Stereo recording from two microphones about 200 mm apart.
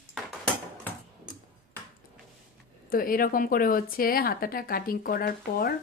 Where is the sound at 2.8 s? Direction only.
45° left (ahead or behind).